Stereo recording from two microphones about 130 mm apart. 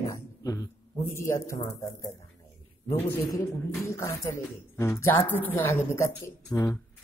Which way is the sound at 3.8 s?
20° left (ahead or behind).